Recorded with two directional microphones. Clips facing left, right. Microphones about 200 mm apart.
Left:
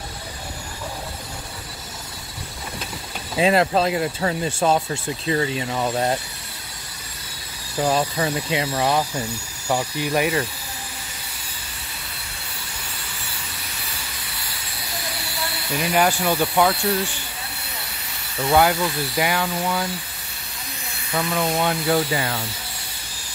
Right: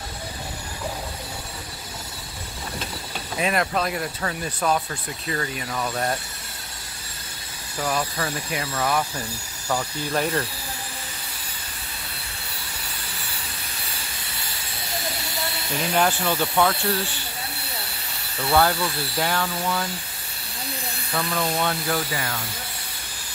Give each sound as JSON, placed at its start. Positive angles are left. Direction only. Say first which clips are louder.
{"t": 3.3, "sound": "speech", "louder": "left 6 dB", "side_deg": 25}
{"t": 7.8, "sound": "speech", "louder": "left 5 dB", "side_deg": 25}
{"t": 9.7, "sound": "speech", "louder": "left 4 dB", "side_deg": 15}
{"t": 15.8, "sound": "speech", "louder": "left 2 dB", "side_deg": 10}
{"t": 18.5, "sound": "speech", "louder": "left 3 dB", "side_deg": 15}
{"t": 21.2, "sound": "speech", "louder": "left 3 dB", "side_deg": 15}
{"t": 21.9, "sound": "speech", "louder": "left 6 dB", "side_deg": 30}